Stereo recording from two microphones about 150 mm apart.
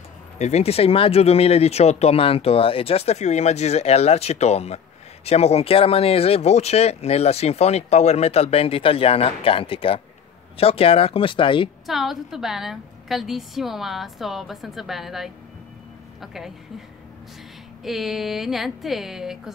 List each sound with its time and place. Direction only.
0.4 s speech: 45° left (ahead or behind)
11.8 s a woman's voice: centre (ahead or behind)
17.8 s a woman's voice: centre (ahead or behind)